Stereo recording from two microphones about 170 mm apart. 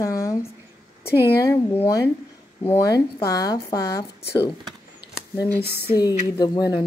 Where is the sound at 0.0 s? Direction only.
15° left (ahead or behind).